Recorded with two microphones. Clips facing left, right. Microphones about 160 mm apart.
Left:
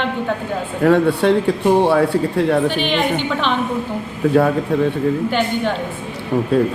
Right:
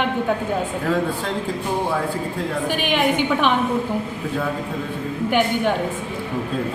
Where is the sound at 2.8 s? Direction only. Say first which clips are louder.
Left 1 dB; 10° right (ahead or behind).